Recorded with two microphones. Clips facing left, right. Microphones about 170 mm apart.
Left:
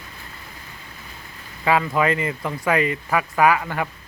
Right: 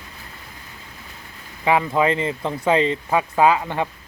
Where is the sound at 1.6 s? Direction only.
20° right (ahead or behind).